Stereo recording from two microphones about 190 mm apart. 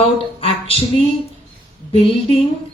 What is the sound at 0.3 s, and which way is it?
A woman's voice, 30° left (ahead or behind).